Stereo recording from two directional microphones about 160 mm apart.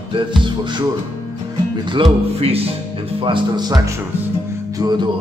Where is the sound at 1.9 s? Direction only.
35° right (ahead or behind).